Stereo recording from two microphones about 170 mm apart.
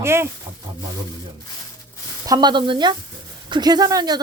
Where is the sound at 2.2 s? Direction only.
25° right (ahead or behind).